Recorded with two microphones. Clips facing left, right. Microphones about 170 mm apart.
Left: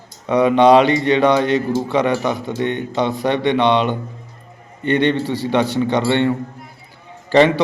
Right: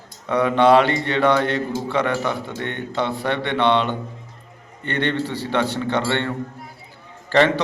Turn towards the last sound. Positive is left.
turn(degrees=15)  # may be behind; listen again after turning